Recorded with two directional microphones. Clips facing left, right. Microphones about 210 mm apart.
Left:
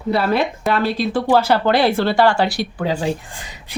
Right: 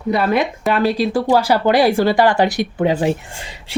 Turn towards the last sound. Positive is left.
turn(degrees=-25)  # may be behind; listen again after turning